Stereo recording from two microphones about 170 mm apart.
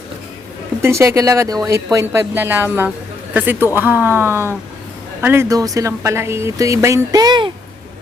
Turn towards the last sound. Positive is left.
turn(degrees=-25)  # may be behind; listen again after turning